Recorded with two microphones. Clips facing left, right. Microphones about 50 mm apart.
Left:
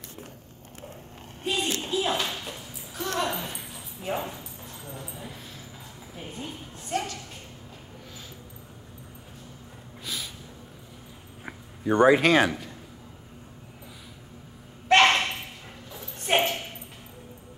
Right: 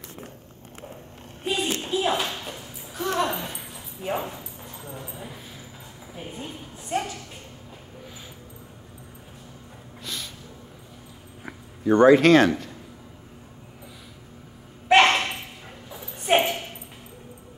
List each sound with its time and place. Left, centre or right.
1.4 s a sound: centre
11.9 s speech: centre
14.9 s dog: centre